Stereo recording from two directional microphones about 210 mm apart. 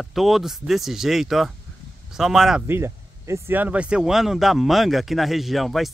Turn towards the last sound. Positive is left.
turn(degrees=0)  # may be behind; listen again after turning